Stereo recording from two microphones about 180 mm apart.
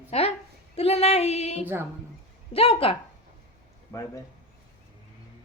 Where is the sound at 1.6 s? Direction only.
10° right (ahead or behind).